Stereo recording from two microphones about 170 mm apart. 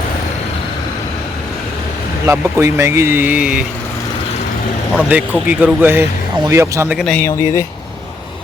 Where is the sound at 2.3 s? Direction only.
15° right (ahead or behind).